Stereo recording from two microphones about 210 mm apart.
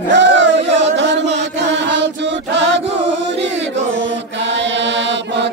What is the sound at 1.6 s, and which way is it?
Chant, 55° right (ahead or behind).